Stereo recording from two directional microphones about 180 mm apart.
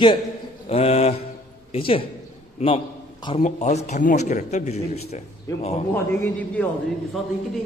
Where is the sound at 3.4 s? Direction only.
40° left (ahead or behind).